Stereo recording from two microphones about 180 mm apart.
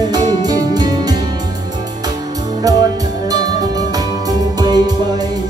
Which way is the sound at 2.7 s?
20° right (ahead or behind).